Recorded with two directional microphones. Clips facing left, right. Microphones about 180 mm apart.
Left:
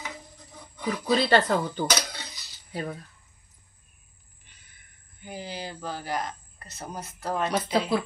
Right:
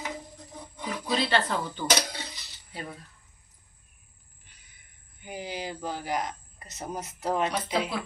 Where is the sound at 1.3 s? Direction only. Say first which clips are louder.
Left 5 dB; 45° left (ahead or behind).